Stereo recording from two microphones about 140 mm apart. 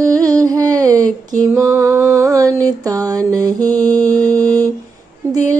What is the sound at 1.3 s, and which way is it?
Mantra, 25° right (ahead or behind).